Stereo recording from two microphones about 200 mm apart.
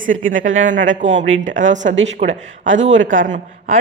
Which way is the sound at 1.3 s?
70° right (ahead or behind).